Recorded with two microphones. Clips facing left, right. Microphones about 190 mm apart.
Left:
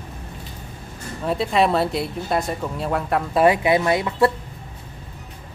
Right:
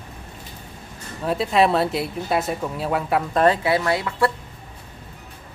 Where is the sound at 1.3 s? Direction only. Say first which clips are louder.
Right 1 dB; centre (ahead or behind).